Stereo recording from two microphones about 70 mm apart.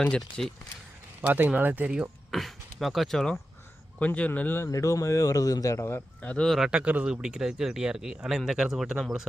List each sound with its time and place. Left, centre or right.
0.2 s speech: centre
1.3 s speech: right
2.3 s speech: centre
4.0 s speech: left
4.7 s a man's voice: left
6.2 s speech: centre
6.7 s speech: centre